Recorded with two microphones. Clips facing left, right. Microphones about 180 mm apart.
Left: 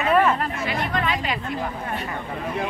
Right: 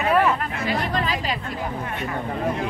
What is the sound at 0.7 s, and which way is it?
Speech, 35° right (ahead or behind).